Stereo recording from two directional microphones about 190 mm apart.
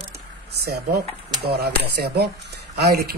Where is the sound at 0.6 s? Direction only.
55° right (ahead or behind).